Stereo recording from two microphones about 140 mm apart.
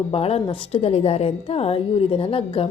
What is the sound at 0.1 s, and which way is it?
A woman's voice, 45° left (ahead or behind).